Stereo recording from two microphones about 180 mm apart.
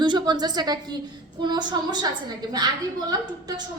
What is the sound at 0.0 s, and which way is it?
A woman's voice, 25° right (ahead or behind).